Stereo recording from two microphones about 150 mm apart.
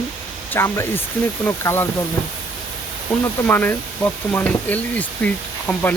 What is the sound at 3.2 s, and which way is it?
Speech, 15° left (ahead or behind).